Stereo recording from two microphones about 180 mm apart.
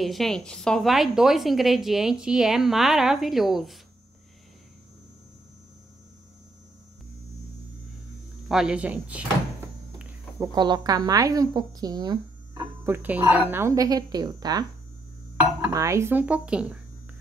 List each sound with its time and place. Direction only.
0.0 s a woman's voice: centre (ahead or behind)
8.5 s speech: 5° right (ahead or behind)
10.4 s a woman's voice: 25° right (ahead or behind)
12.9 s speech: 10° right (ahead or behind)